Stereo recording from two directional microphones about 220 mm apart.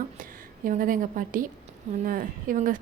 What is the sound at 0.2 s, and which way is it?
A woman's voice, 40° right (ahead or behind).